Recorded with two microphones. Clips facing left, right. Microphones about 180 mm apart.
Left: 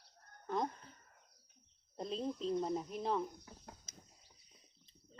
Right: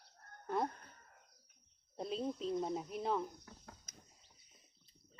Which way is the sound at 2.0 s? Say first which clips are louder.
Even; 5° right (ahead or behind).